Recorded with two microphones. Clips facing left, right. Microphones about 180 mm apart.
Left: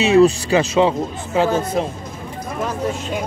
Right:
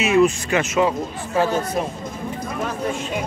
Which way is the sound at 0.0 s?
30° left (ahead or behind).